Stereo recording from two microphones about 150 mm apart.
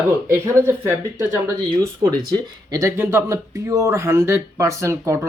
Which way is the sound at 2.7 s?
20° right (ahead or behind).